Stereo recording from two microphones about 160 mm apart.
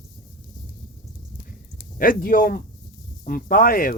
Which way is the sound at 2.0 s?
60° left (ahead or behind).